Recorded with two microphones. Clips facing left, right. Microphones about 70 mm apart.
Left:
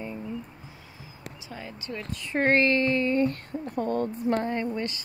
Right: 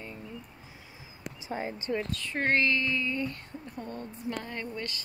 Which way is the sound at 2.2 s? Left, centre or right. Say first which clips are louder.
Left 6 dB; left.